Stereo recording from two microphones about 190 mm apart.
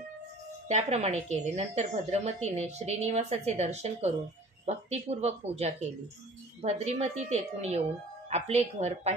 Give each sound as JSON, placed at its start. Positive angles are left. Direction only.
{"t": 0.7, "sound": "a woman's voice", "side_deg": -35}